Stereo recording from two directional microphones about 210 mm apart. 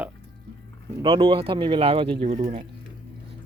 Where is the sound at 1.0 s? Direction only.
25° right (ahead or behind).